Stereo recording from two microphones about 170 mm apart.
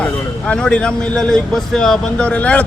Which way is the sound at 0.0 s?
5° left (ahead or behind).